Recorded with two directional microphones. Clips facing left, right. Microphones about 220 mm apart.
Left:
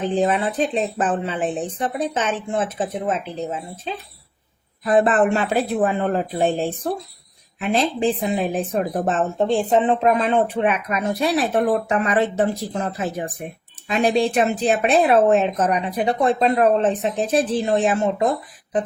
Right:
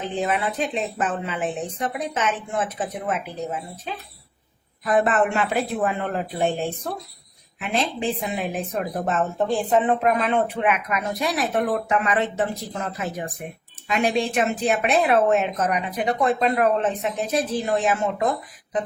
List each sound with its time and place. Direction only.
0.1 s speech: 35° left (ahead or behind)